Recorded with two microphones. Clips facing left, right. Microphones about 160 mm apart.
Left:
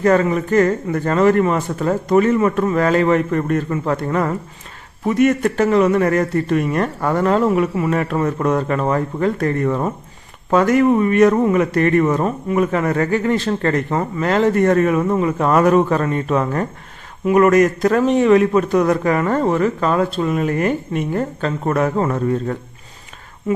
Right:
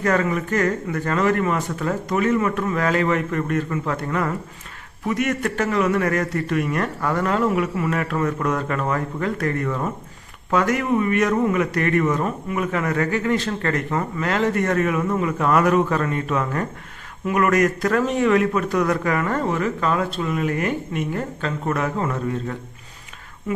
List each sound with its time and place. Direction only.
0.0 s a man's voice: 30° left (ahead or behind)